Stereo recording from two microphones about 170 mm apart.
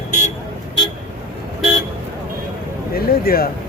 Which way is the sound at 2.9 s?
65° left (ahead or behind).